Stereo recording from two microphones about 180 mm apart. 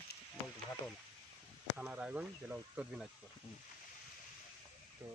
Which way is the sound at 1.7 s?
10° right (ahead or behind).